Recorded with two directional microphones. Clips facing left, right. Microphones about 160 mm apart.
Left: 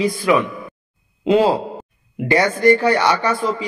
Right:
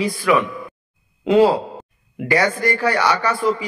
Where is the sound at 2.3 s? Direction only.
25° left (ahead or behind).